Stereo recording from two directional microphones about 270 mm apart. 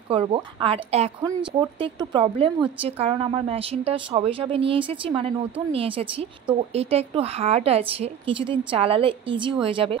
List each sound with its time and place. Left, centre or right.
0.1 s a woman's voice: centre